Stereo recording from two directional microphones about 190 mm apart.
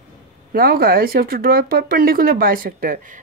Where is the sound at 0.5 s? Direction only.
50° right (ahead or behind).